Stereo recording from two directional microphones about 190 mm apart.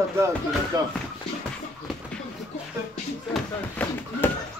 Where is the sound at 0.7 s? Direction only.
20° right (ahead or behind).